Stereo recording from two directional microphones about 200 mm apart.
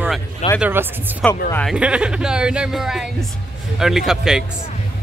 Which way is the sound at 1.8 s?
5° right (ahead or behind).